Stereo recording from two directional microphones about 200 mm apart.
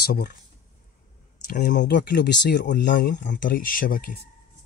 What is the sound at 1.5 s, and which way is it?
Speech, 45° left (ahead or behind).